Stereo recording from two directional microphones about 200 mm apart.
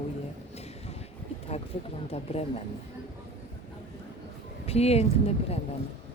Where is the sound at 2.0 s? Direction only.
30° left (ahead or behind).